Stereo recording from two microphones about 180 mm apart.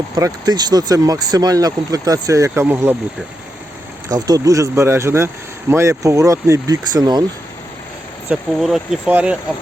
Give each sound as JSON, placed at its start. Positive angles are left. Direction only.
{"t": 0.2, "sound": "speech", "side_deg": -20}
{"t": 4.1, "sound": "speech", "side_deg": -20}
{"t": 8.3, "sound": "speech", "side_deg": 0}